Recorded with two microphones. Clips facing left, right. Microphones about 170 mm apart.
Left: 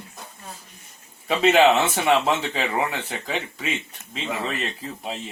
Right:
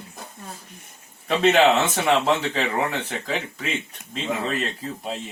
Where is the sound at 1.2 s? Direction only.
Centre (ahead or behind).